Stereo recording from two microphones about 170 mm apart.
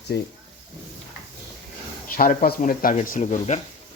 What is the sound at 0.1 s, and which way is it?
Speech, 75° left (ahead or behind).